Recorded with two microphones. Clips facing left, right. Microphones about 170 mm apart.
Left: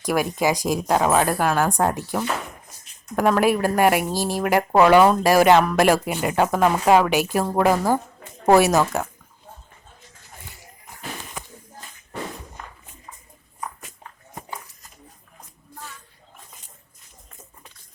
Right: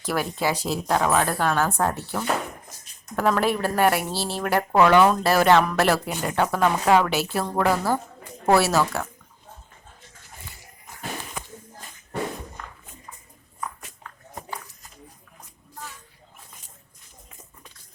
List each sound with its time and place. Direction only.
0.0 s a woman's voice: 15° left (ahead or behind)